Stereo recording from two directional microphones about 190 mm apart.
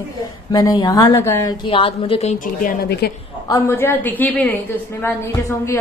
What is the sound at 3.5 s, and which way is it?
A woman's voice, 15° left (ahead or behind).